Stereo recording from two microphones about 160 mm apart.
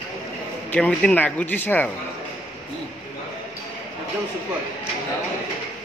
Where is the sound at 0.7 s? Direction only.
5° left (ahead or behind).